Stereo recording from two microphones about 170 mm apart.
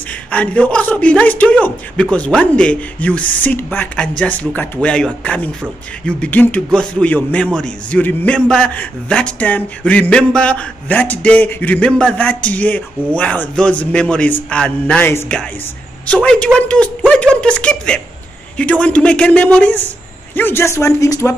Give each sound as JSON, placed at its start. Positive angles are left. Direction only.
{"t": 0.1, "sound": "speech", "side_deg": 5}